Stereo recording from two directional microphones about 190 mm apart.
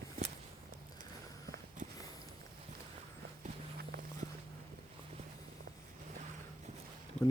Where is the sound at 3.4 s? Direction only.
45° right (ahead or behind).